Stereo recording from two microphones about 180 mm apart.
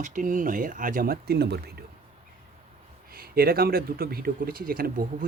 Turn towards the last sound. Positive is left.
turn(degrees=-55)  # may be behind; listen again after turning